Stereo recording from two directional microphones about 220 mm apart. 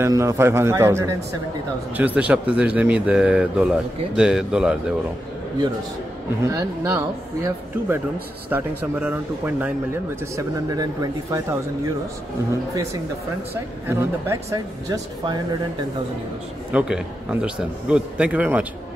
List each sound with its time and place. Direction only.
0.0 s speech: 15° right (ahead or behind)
6.4 s speech: 15° right (ahead or behind)
13.8 s speech: 10° right (ahead or behind)
16.7 s speech: 5° right (ahead or behind)